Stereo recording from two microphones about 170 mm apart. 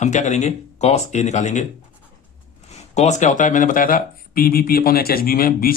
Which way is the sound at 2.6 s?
40° left (ahead or behind).